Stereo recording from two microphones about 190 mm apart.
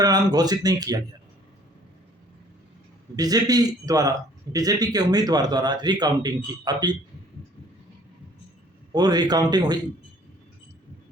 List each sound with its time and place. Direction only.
0.0 s a man's voice: 20° right (ahead or behind)
3.2 s a man's voice: 20° right (ahead or behind)
8.9 s a man's voice: 20° right (ahead or behind)